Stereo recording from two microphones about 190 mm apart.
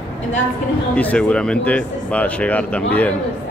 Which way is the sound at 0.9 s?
5° left (ahead or behind).